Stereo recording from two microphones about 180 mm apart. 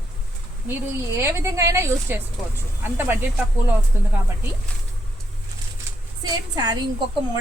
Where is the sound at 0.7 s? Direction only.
15° right (ahead or behind).